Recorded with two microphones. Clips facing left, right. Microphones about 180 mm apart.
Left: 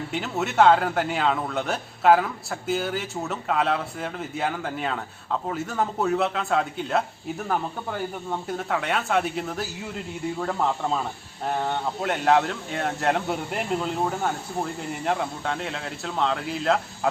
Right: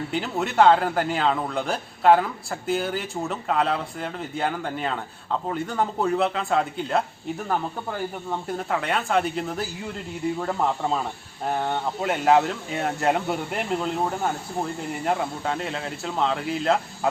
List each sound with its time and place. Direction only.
0.1 s a man's voice: centre (ahead or behind)